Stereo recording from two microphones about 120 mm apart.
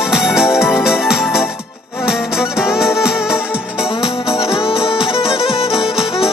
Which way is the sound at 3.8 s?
55° left (ahead or behind).